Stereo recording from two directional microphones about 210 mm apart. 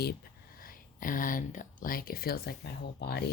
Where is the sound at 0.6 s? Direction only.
40° left (ahead or behind).